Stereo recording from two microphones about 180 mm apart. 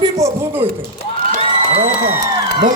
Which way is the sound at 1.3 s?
40° right (ahead or behind).